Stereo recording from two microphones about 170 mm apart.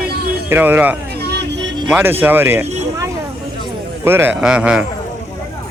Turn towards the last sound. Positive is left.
turn(degrees=-5)  # may be behind; listen again after turning